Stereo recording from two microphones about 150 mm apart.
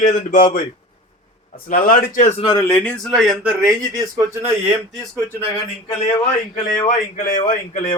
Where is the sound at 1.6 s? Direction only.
65° left (ahead or behind).